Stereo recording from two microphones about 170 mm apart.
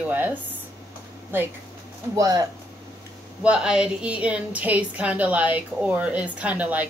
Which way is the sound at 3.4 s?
5° right (ahead or behind).